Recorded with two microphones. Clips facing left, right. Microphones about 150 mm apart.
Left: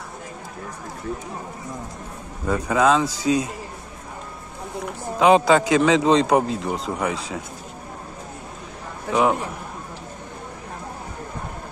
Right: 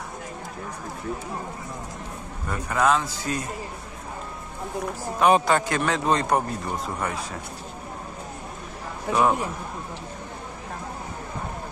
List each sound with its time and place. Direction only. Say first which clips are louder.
2.4 s a man's voice: left 4 dB; 90° left
5.2 s a man's voice: left 4 dB; 90° left
9.1 s a man's voice: left 2 dB; 70° left (ahead or behind)